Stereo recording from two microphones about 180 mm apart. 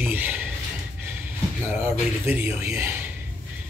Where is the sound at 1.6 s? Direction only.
15° right (ahead or behind).